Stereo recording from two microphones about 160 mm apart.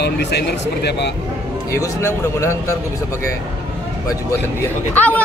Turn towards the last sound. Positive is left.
turn(degrees=10)  # may be behind; listen again after turning